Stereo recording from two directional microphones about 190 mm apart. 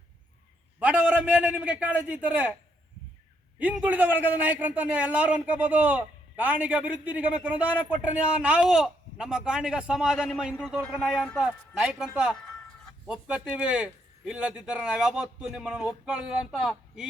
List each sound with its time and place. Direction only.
0.8 s a man's voice: 5° right (ahead or behind)
3.6 s a man's voice: 5° right (ahead or behind)